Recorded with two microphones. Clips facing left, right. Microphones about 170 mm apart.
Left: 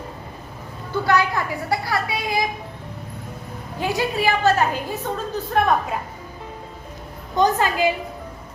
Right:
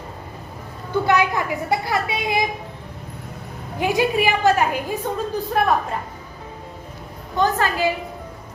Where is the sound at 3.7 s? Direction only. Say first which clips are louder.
Right 4 dB; 15° right (ahead or behind).